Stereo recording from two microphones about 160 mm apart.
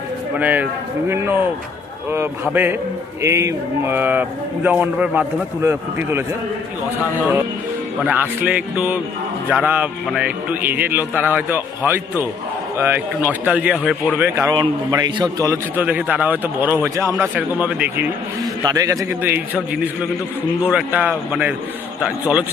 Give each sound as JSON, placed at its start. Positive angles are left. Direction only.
{"t": 0.3, "sound": "a man's voice", "side_deg": -10}
{"t": 8.0, "sound": "a man's voice", "side_deg": -10}
{"t": 14.5, "sound": "a man's voice", "side_deg": -25}
{"t": 18.6, "sound": "a man's voice", "side_deg": -20}